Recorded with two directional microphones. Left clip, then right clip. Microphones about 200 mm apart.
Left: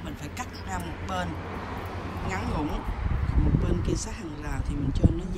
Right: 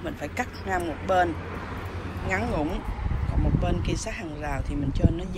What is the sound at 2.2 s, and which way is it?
Speech, 15° left (ahead or behind).